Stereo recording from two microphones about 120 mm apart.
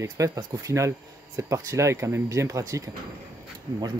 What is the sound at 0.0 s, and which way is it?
Speech, 30° right (ahead or behind).